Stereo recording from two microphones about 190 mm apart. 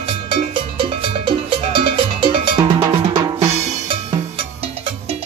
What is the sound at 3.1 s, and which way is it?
Drum, 20° right (ahead or behind).